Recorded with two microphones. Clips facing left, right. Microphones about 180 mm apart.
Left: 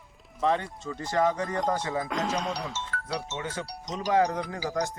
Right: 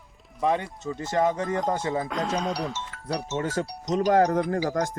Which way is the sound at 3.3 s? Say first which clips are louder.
Right 7 dB; 40° right (ahead or behind).